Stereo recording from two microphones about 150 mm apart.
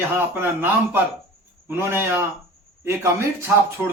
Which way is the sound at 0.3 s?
15° right (ahead or behind).